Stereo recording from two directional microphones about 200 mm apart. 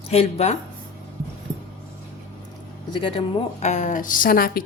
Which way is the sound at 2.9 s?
25° left (ahead or behind).